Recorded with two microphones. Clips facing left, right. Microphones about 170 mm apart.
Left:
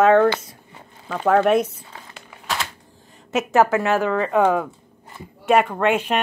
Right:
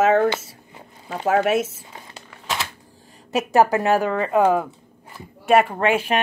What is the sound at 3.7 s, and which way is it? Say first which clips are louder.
Speech: even; 35° right (ahead or behind).